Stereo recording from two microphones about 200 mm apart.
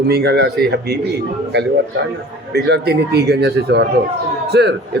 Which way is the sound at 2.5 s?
55° right (ahead or behind).